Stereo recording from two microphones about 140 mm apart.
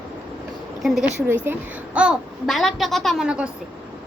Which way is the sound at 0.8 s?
Centre (ahead or behind).